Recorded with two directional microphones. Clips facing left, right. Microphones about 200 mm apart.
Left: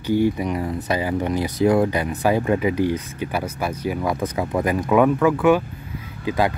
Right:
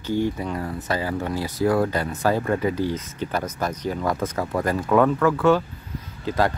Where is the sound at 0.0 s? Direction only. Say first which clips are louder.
Left 4 dB; 15° left (ahead or behind).